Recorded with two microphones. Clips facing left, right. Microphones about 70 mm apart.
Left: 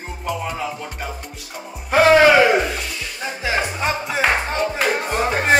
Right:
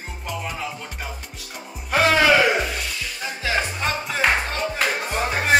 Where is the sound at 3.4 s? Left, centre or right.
Centre.